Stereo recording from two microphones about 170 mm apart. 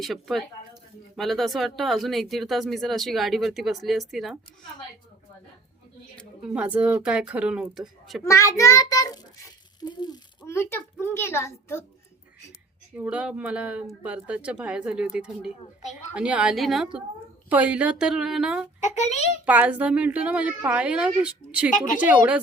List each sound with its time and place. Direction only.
0.0 s speech: centre (ahead or behind)
6.1 s speech: 5° right (ahead or behind)
8.2 s child singing: 15° left (ahead or behind)
11.0 s a child's voice: 15° left (ahead or behind)
13.0 s speech: 10° right (ahead or behind)
18.8 s a child's voice: 45° left (ahead or behind)
19.5 s speech: 10° right (ahead or behind)